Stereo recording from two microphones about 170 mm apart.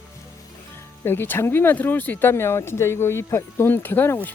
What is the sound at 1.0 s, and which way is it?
Speech, 15° left (ahead or behind).